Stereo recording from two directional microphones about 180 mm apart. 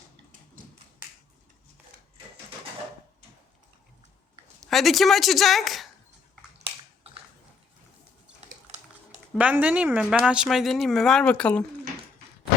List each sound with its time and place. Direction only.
4.6 s speech: centre (ahead or behind)
6.7 s a sound: 30° right (ahead or behind)
9.3 s speech: 5° right (ahead or behind)